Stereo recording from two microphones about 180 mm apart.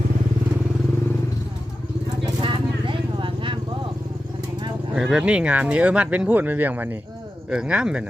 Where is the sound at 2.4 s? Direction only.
30° right (ahead or behind).